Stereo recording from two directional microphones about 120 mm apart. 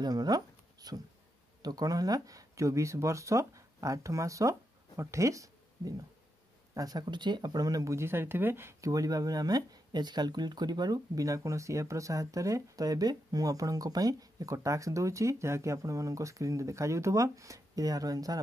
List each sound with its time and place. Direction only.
0.0 s speech: 35° right (ahead or behind)